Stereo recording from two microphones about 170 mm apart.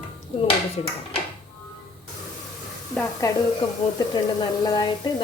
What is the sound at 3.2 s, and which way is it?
Speech, 20° left (ahead or behind).